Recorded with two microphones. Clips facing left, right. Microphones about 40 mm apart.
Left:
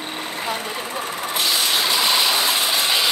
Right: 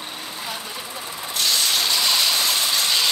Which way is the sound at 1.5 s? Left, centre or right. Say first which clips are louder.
Left 1 dB; left.